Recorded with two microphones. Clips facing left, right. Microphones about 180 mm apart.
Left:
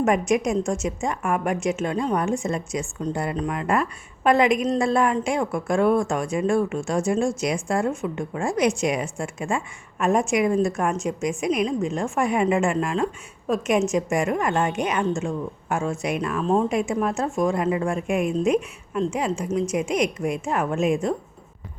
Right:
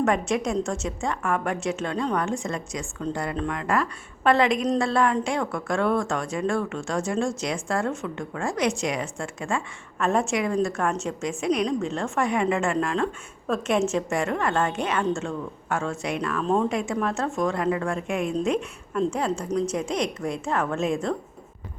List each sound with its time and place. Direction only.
0.0 s a woman's voice: 15° left (ahead or behind)
5.8 s a woman's voice: 10° left (ahead or behind)
16.4 s a woman's voice: centre (ahead or behind)
16.6 s a woman's voice: 20° left (ahead or behind)
18.9 s a woman's voice: 5° left (ahead or behind)